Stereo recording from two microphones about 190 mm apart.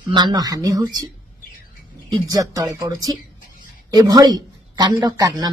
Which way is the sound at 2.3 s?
20° right (ahead or behind).